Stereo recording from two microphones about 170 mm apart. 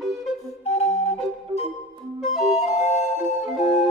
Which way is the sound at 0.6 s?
40° left (ahead or behind).